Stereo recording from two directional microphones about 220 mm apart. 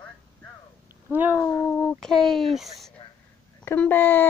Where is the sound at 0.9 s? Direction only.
10° right (ahead or behind).